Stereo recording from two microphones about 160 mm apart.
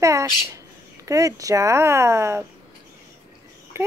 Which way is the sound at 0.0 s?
20° right (ahead or behind).